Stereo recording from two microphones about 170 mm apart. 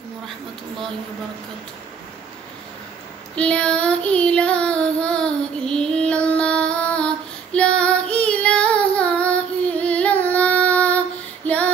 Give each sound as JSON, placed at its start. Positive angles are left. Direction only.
{"t": 3.3, "sound": "child singing", "side_deg": 5}
{"t": 11.4, "sound": "female singing", "side_deg": 10}